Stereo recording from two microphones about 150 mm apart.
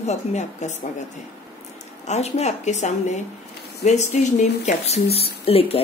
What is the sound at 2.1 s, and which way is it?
Speech, 45° left (ahead or behind).